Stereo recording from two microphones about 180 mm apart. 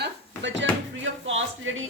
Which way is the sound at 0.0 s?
85° right.